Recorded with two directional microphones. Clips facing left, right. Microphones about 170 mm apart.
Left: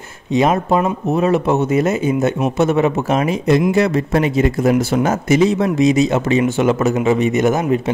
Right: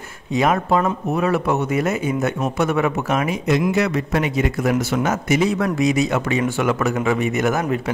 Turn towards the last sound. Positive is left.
turn(degrees=20)  # may be behind; listen again after turning